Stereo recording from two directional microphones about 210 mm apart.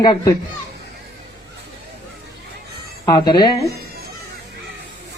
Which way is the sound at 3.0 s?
20° left (ahead or behind).